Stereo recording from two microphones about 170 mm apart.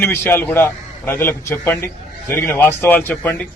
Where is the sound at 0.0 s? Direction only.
15° left (ahead or behind).